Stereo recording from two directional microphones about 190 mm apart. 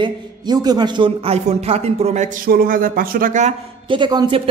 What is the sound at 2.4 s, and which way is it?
A man's voice, 50° right (ahead or behind).